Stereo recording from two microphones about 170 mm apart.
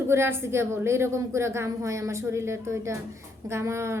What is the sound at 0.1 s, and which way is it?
A woman's voice, 15° right (ahead or behind).